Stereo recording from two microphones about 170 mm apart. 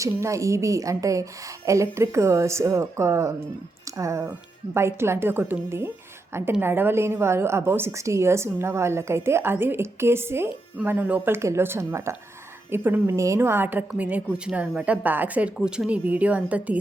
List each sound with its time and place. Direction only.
0.0 s a woman's voice: 20° right (ahead or behind)